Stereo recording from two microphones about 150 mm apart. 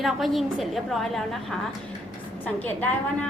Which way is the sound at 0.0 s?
Centre (ahead or behind).